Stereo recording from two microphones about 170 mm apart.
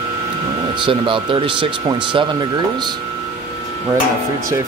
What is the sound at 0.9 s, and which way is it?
Speech, 30° right (ahead or behind).